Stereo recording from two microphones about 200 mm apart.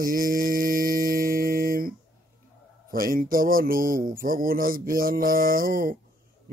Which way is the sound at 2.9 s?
45° right (ahead or behind).